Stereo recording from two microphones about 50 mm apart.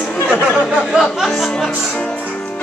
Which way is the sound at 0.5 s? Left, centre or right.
Centre.